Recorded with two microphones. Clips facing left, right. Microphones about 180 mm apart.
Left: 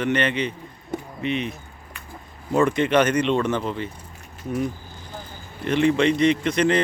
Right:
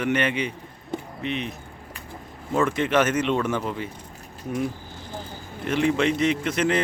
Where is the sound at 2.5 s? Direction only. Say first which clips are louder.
Left 3 dB; centre (ahead or behind).